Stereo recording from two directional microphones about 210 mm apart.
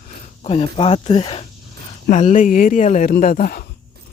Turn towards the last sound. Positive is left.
turn(degrees=40)  # may be behind; listen again after turning